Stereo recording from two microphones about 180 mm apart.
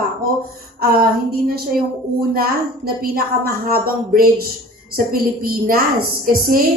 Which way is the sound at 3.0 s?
55° right (ahead or behind).